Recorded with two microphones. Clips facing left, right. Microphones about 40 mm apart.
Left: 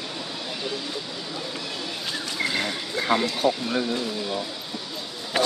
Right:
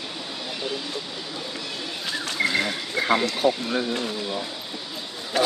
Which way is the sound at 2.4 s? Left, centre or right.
Centre.